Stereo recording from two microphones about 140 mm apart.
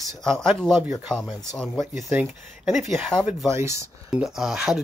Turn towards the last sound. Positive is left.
turn(degrees=-5)  # may be behind; listen again after turning